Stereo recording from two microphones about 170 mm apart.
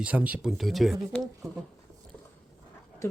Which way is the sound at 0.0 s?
5° right (ahead or behind).